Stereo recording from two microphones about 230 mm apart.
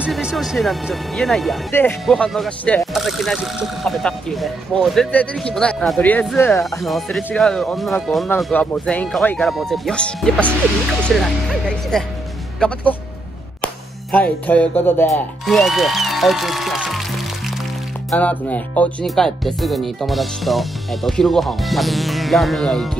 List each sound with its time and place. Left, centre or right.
0.0 s speech: centre
14.1 s speech: centre
18.1 s speech: centre